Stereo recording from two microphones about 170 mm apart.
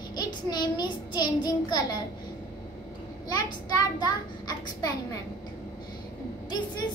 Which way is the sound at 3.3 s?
20° left (ahead or behind).